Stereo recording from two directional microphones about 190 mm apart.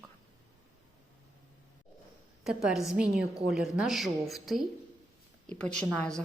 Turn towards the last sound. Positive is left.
turn(degrees=5)  # may be behind; listen again after turning